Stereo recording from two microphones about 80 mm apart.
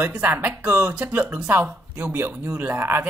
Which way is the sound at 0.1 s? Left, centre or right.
Centre.